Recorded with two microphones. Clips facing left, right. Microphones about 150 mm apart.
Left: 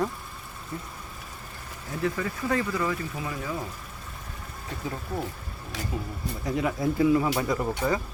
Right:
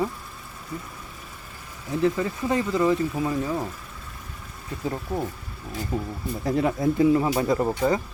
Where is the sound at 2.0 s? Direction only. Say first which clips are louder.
Right 5 dB; 25° right (ahead or behind).